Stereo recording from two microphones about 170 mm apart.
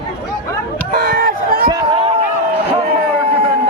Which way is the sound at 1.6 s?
30° right (ahead or behind).